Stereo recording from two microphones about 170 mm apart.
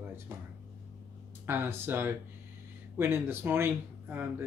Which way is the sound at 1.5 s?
10° right (ahead or behind).